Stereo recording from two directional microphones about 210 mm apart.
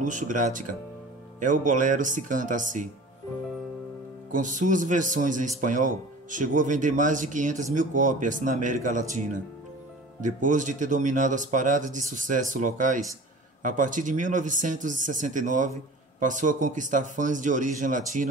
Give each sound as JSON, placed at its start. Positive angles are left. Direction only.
{"t": 0.0, "sound": "speech", "side_deg": -35}
{"t": 4.3, "sound": "speech", "side_deg": -35}